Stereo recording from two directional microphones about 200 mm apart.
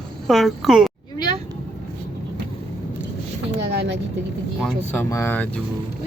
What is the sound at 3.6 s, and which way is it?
Vehicle, 55° right (ahead or behind).